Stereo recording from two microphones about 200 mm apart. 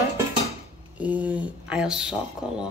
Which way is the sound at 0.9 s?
5° right (ahead or behind).